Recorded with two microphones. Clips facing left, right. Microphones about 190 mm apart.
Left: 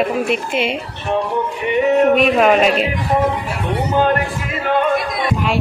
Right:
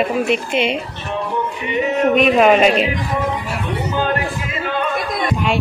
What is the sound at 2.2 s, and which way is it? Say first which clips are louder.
Speech: right 1 dB; centre (ahead or behind).